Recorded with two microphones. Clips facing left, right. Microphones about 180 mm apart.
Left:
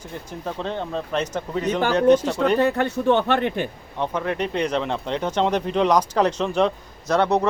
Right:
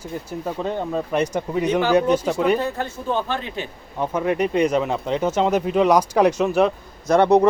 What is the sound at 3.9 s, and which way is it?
Speech, 10° right (ahead or behind).